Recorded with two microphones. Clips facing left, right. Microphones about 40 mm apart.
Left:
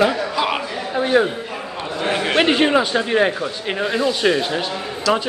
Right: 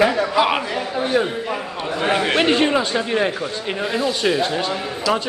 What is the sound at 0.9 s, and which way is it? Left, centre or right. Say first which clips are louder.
Speech: left 4 dB; centre.